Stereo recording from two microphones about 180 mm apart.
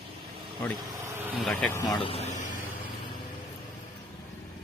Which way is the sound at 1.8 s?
30° left (ahead or behind).